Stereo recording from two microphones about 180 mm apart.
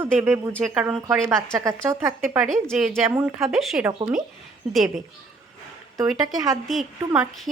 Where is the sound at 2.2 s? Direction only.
Centre (ahead or behind).